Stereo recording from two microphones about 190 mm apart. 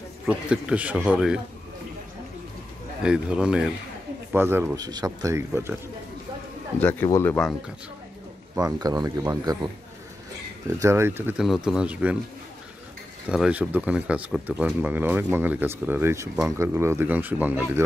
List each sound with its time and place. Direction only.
0.3 s a man's voice: 5° right (ahead or behind)
3.0 s a man's voice: 5° right (ahead or behind)
6.8 s speech: 10° left (ahead or behind)
8.5 s speech: 20° right (ahead or behind)
10.8 s a man's voice: 15° right (ahead or behind)
13.3 s speech: 5° right (ahead or behind)